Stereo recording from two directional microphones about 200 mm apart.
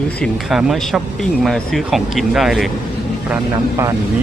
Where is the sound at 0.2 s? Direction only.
Centre (ahead or behind).